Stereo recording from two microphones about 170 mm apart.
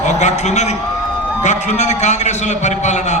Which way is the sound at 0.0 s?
45° left (ahead or behind).